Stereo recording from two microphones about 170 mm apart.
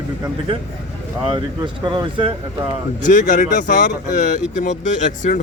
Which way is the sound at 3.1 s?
50° left (ahead or behind).